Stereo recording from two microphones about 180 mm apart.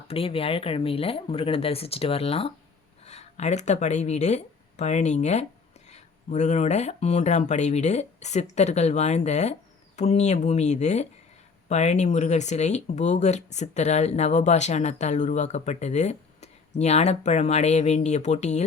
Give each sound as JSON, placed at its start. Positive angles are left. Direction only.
{"t": 0.1, "sound": "speech", "side_deg": 30}